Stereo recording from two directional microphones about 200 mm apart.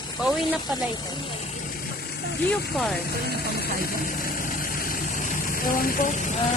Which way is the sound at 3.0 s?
50° left (ahead or behind).